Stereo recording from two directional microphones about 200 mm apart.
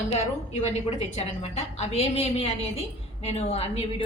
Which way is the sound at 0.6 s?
35° left (ahead or behind).